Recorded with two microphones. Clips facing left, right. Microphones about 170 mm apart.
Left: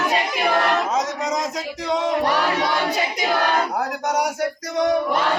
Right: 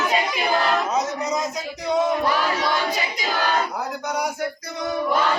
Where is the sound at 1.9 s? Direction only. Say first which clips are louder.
Even; 80° left.